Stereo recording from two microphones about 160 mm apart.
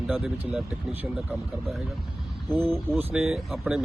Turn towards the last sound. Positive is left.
turn(degrees=-5)  # may be behind; listen again after turning